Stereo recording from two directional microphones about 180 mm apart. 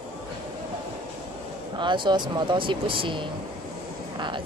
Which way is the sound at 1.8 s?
25° right (ahead or behind).